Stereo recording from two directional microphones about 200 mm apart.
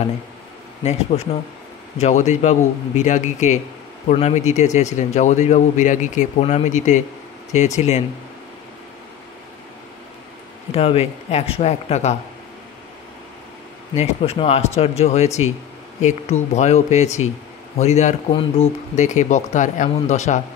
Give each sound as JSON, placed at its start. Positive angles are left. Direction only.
{"t": 0.8, "sound": "speech", "side_deg": 30}
{"t": 10.7, "sound": "speech", "side_deg": 30}
{"t": 13.9, "sound": "speech", "side_deg": 30}